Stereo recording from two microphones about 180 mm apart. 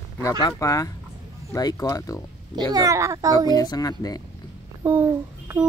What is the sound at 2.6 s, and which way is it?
Speech, 20° right (ahead or behind).